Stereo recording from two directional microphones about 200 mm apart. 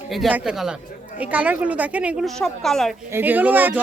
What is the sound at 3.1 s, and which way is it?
Speech, 10° right (ahead or behind).